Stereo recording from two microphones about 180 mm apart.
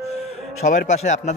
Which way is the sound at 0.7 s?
45° left (ahead or behind).